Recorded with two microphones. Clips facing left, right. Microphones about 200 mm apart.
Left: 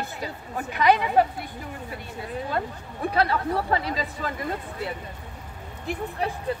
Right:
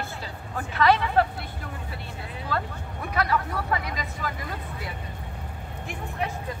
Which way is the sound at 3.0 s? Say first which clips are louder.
Left 3 dB; 30° left (ahead or behind).